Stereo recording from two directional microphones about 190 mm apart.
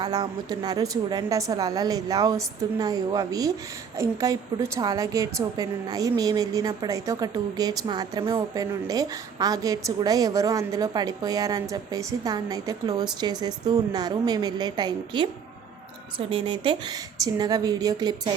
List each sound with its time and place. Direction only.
0.0 s a woman's voice: 20° right (ahead or behind)